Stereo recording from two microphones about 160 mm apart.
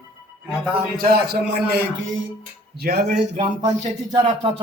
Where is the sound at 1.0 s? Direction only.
75° right (ahead or behind).